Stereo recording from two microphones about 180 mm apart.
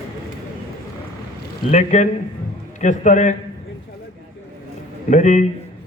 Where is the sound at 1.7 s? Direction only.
40° left (ahead or behind).